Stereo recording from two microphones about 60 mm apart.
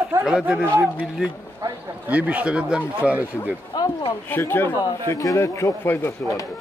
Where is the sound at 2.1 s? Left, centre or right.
Right.